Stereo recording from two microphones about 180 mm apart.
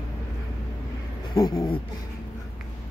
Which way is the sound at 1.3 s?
25° left (ahead or behind).